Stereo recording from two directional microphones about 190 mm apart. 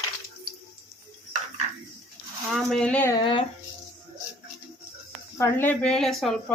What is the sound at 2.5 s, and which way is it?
Speech, 5° left (ahead or behind).